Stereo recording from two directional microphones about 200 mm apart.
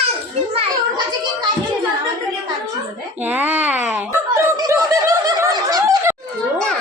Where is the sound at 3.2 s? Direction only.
10° right (ahead or behind).